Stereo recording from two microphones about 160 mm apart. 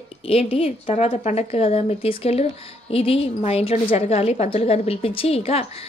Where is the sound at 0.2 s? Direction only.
35° left (ahead or behind).